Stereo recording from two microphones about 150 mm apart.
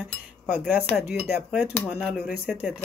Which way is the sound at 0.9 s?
Centre (ahead or behind).